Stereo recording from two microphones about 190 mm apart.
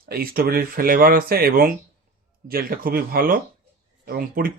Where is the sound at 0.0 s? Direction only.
50° right (ahead or behind).